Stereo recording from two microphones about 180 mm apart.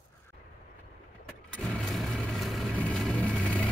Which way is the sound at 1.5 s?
5° left (ahead or behind).